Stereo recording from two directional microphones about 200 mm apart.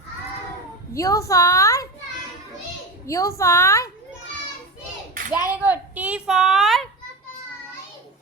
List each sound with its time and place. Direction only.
0.9 s a woman's voice: 15° left (ahead or behind)
3.1 s a woman's voice: 15° left (ahead or behind)
5.5 s a woman's voice: 10° right (ahead or behind)